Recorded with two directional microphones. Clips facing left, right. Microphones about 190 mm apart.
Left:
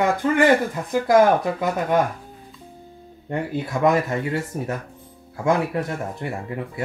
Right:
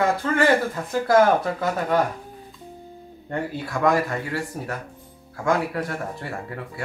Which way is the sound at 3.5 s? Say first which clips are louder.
Left 2 dB; 20° left (ahead or behind).